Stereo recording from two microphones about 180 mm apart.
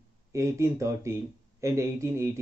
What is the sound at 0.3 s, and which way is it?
Speech, 15° right (ahead or behind).